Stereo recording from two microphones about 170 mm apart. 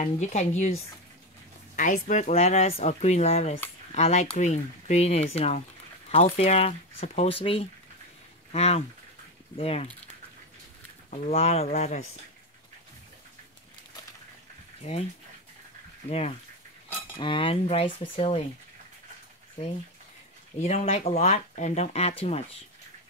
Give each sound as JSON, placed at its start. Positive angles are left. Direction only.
{"t": 0.0, "sound": "speech", "side_deg": 45}
{"t": 1.8, "sound": "speech", "side_deg": 50}
{"t": 11.1, "sound": "speech", "side_deg": 40}
{"t": 14.9, "sound": "speech", "side_deg": 40}
{"t": 16.1, "sound": "speech", "side_deg": 35}
{"t": 20.5, "sound": "speech", "side_deg": 40}